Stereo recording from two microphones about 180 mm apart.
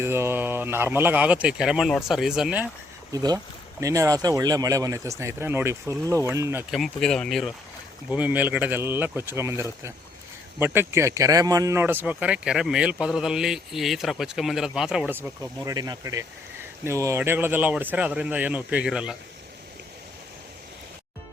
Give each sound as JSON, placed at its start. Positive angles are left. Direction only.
{"t": 0.0, "sound": "speech", "side_deg": -15}
{"t": 3.1, "sound": "speech", "side_deg": -20}
{"t": 6.7, "sound": "speech", "side_deg": 0}